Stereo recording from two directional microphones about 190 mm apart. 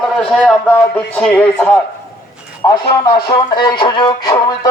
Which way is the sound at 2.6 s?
20° left (ahead or behind).